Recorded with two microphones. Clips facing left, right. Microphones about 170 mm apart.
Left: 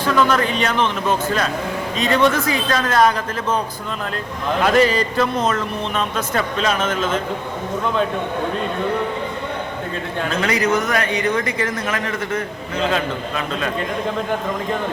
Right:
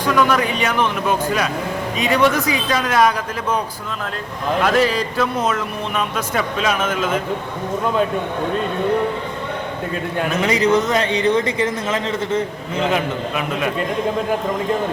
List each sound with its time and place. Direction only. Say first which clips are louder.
0.0 s a man's voice: even; 15° right (ahead or behind)
4.6 s a man's voice: left 2 dB; centre (ahead or behind)
10.2 s speech: right 2 dB; 20° right (ahead or behind)